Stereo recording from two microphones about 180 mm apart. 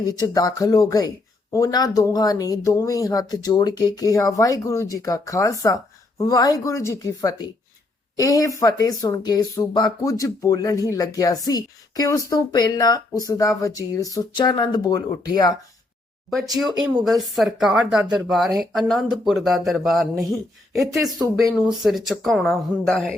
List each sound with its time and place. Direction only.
0.0 s speech: 20° left (ahead or behind)
17.0 s speech: centre (ahead or behind)